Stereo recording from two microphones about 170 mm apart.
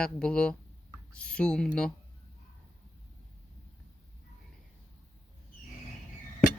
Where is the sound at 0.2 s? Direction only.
5° left (ahead or behind).